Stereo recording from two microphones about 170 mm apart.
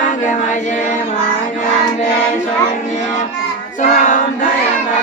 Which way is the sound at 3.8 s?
50° left (ahead or behind).